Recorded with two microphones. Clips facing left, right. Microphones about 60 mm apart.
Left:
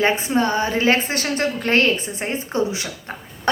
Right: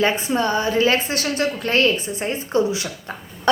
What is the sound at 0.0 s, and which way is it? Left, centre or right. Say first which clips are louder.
A woman's voice: left 1 dB; left.